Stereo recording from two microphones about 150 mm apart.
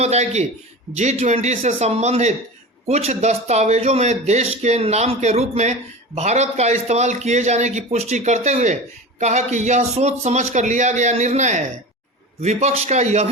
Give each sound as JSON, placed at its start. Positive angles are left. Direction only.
{"t": 0.0, "sound": "a man's voice", "side_deg": -45}